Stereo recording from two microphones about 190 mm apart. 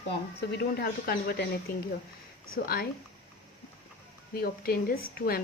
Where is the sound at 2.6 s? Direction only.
50° left (ahead or behind).